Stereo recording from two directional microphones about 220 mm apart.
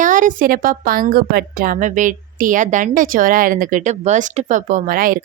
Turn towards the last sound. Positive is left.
turn(degrees=-40)  # may be behind; listen again after turning